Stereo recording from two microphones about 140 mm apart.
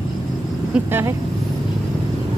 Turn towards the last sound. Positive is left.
turn(degrees=-15)  # may be behind; listen again after turning